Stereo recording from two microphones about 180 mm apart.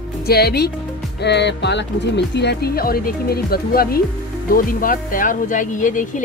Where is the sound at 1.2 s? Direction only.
70° left (ahead or behind).